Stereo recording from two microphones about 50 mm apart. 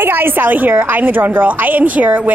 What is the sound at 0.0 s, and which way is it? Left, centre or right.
A woman's voice, right.